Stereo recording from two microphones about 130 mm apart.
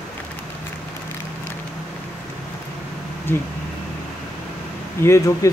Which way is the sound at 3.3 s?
15° left (ahead or behind).